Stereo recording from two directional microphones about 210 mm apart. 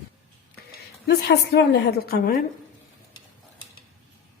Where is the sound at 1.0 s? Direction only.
50° left (ahead or behind).